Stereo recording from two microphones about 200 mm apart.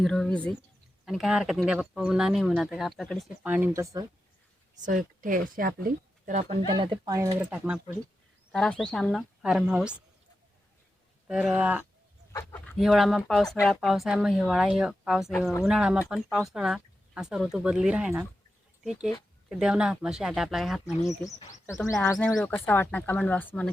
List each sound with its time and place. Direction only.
0.0 s speech: 5° left (ahead or behind); by 4.0 s 15° right (ahead or behind)
4.8 s speech: 40° right (ahead or behind)
6.7 s speech: 20° right (ahead or behind); by 7.8 s 5° right (ahead or behind)
8.8 s speech: 5° left (ahead or behind)
11.3 s speech: 5° right (ahead or behind)
12.3 s speech: 15° left (ahead or behind)
12.8 s speech: centre (ahead or behind)
21.1 s speech: 15° left (ahead or behind)